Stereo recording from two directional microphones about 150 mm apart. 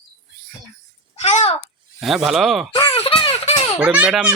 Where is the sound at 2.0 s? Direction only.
Centre (ahead or behind).